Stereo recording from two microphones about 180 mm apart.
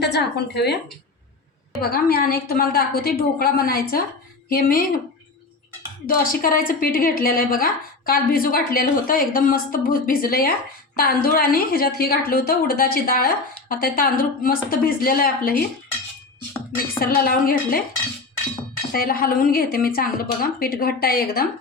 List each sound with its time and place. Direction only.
0.0 s speech: 65° left (ahead or behind)
1.8 s a woman's voice: 55° left (ahead or behind)
6.1 s a woman's voice: 55° left (ahead or behind)
17.0 s a woman's voice: 55° left (ahead or behind)
18.9 s a woman's voice: 55° left (ahead or behind)